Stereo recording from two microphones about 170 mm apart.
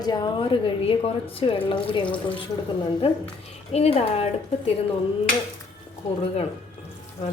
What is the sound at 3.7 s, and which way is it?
A woman's voice, 35° left (ahead or behind).